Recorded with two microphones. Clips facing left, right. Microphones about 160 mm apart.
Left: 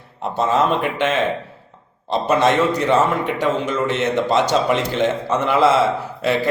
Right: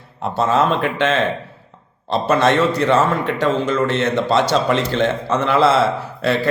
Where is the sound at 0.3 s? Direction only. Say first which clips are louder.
Right 1 dB; 15° left (ahead or behind).